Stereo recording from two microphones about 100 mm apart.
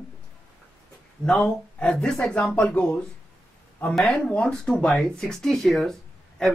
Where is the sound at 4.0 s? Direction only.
Centre (ahead or behind).